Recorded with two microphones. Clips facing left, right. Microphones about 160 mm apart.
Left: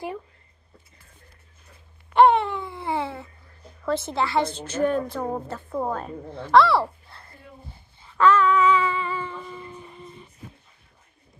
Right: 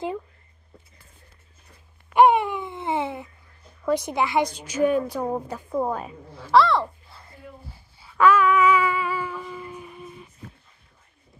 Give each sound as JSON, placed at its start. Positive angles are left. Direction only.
{"t": 2.1, "sound": "a sound", "side_deg": -15}
{"t": 3.8, "sound": "a woman's voice", "side_deg": -15}
{"t": 8.0, "sound": "humming", "side_deg": -10}